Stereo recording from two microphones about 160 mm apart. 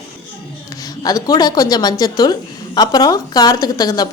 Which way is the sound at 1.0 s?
25° left (ahead or behind).